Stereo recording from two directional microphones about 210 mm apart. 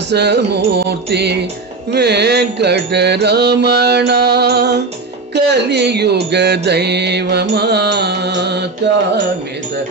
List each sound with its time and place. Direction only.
0.1 s music: 55° right (ahead or behind)